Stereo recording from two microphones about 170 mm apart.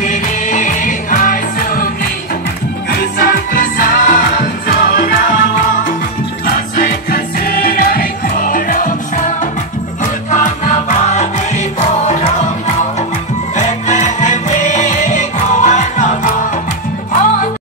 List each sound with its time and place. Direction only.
0.0 s music: 45° left (ahead or behind)
2.9 s music: 60° left (ahead or behind)
6.4 s music: 60° left (ahead or behind); by 12.4 s 40° left (ahead or behind)
13.6 s music: 45° left (ahead or behind)